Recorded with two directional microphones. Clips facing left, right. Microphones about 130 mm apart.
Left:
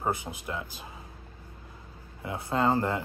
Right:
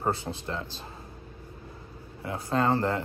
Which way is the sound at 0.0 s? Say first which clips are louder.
Right 2 dB; 15° left (ahead or behind).